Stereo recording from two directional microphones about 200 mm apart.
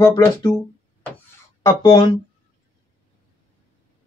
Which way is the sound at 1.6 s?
15° left (ahead or behind).